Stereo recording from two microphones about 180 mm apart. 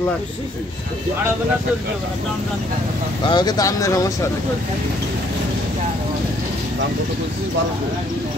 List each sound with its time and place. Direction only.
3.3 s speech: 25° left (ahead or behind)